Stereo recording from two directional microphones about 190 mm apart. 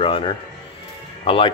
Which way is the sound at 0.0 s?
25° left (ahead or behind).